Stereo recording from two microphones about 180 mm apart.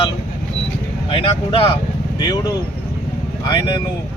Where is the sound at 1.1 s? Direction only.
30° left (ahead or behind).